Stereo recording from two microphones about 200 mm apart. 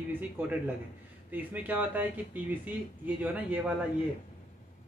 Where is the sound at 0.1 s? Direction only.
10° right (ahead or behind).